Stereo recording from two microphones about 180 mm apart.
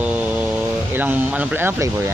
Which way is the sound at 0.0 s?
10° right (ahead or behind).